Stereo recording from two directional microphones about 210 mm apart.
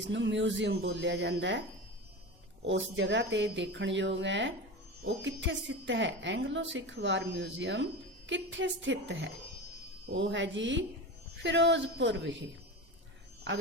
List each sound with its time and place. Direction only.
0.1 s a woman's voice: 60° right (ahead or behind)
2.6 s a woman's voice: 60° right (ahead or behind)